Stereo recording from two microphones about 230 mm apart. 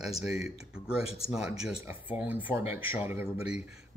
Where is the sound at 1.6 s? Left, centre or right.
Centre.